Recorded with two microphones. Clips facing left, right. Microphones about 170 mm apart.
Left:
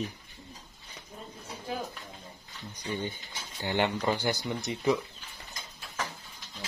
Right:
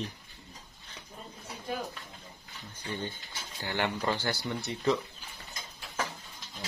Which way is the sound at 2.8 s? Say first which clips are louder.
Left 3 dB; 15° left (ahead or behind).